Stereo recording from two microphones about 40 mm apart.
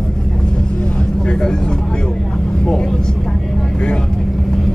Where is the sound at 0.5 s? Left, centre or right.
Left.